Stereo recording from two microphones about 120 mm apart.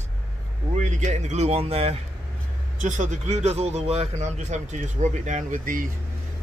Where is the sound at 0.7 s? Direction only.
85° right; by 2.0 s 55° right (ahead or behind).